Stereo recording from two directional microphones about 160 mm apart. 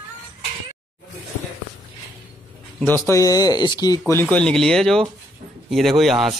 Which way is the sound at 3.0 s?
20° left (ahead or behind).